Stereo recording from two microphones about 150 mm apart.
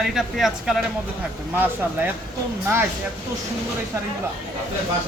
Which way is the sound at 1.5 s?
10° right (ahead or behind).